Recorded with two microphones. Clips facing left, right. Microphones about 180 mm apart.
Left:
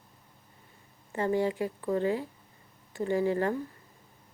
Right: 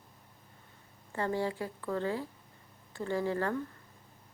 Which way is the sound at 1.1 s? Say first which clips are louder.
Left 5 dB; 15° left (ahead or behind).